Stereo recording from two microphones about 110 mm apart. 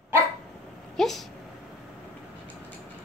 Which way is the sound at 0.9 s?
5° left (ahead or behind).